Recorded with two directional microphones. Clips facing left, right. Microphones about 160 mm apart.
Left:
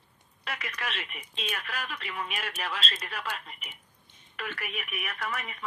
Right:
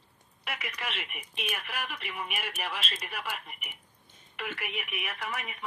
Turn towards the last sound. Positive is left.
turn(degrees=-15)  # may be behind; listen again after turning